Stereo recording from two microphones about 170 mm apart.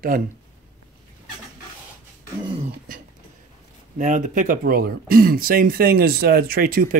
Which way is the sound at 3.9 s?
45° right (ahead or behind).